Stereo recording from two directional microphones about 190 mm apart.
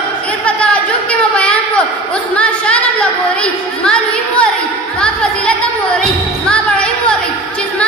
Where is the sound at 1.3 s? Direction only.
5° left (ahead or behind).